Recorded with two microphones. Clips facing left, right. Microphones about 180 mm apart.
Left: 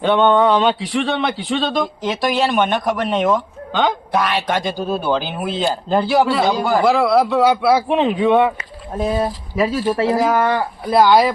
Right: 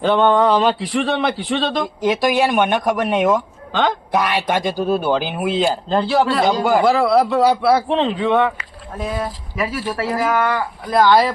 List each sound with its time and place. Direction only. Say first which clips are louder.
0.0 s a man's voice: left 1 dB; centre (ahead or behind)
2.0 s speech: right 4 dB; 10° right (ahead or behind)
3.7 s speech: left 1 dB; centre (ahead or behind)
4.1 s speech: even; 15° right (ahead or behind)
5.9 s a man's voice: left 3 dB; 5° left (ahead or behind)
7.9 s speech: left 2 dB; 15° left (ahead or behind)
9.0 s speech: left 5 dB; 30° left (ahead or behind)
11.0 s speech: left 1 dB; 10° left (ahead or behind)